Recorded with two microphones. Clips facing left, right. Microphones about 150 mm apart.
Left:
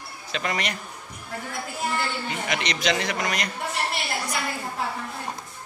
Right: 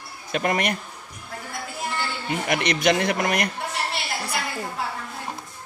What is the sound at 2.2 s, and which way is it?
Speech, 55° right (ahead or behind).